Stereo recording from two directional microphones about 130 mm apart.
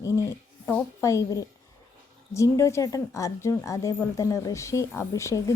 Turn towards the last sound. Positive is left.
turn(degrees=20)  # may be behind; listen again after turning